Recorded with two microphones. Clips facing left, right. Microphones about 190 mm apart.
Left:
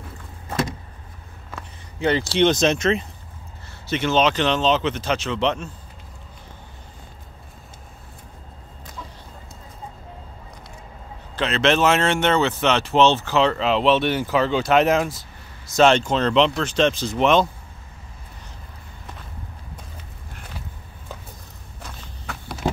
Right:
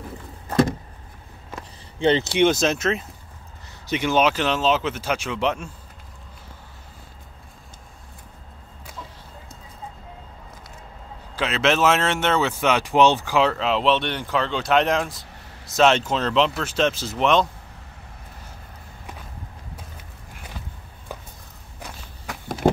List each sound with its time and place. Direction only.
2.0 s speech: 25° right (ahead or behind)
2.3 s speech: 5° right (ahead or behind)
3.8 s speech: 15° right (ahead or behind)
11.3 s speech: 5° right (ahead or behind)
21.8 s walk: 10° right (ahead or behind)